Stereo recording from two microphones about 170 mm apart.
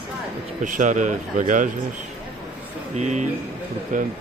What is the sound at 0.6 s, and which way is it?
Speech, 45° right (ahead or behind).